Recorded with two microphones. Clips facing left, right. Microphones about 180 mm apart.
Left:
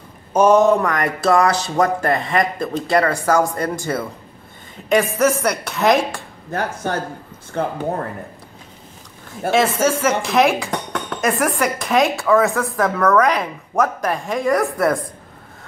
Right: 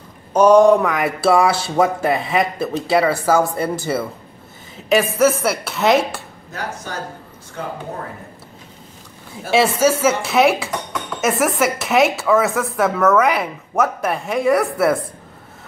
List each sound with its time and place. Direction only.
0.3 s speech: 5° left (ahead or behind)
6.5 s speech: 55° left (ahead or behind)
9.5 s speech: 10° right (ahead or behind)